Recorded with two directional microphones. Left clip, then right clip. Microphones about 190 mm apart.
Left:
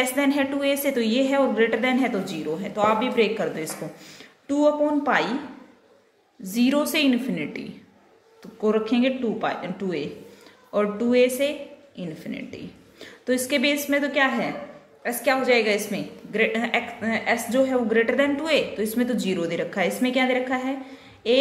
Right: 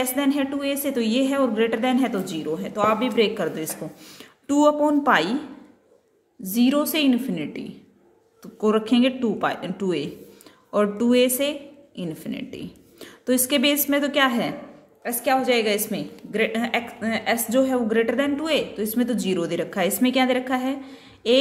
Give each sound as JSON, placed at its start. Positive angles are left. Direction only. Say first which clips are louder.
{"t": 0.0, "sound": "a woman's voice", "louder": "left 1 dB", "side_deg": -20}
{"t": 6.4, "sound": "a woman's voice", "louder": "right 1 dB", "side_deg": -30}